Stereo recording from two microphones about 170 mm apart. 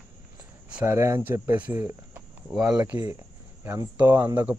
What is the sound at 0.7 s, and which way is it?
Speech, 10° right (ahead or behind).